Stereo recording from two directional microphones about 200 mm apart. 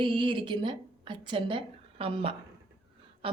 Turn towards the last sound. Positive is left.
turn(degrees=-25)  # may be behind; listen again after turning